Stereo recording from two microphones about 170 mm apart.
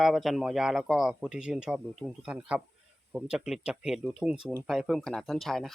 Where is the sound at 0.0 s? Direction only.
Centre (ahead or behind).